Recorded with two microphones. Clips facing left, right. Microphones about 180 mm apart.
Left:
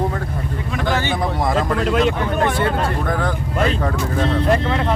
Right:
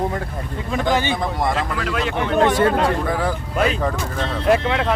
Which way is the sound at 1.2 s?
Centre (ahead or behind).